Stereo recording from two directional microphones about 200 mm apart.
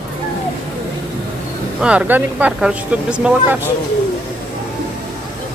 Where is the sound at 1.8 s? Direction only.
5° right (ahead or behind).